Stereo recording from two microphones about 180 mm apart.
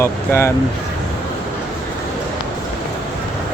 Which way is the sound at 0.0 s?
15° left (ahead or behind).